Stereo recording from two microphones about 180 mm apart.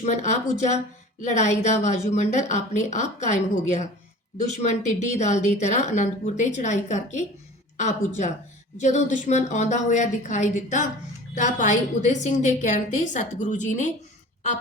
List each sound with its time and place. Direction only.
0.0 s a woman's voice: 40° left (ahead or behind)